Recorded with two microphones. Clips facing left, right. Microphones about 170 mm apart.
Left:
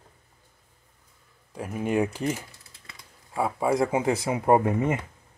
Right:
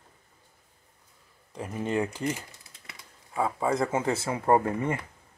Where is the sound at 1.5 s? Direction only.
10° left (ahead or behind).